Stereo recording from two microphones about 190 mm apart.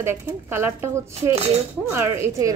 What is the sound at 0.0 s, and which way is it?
A woman's voice, 15° right (ahead or behind).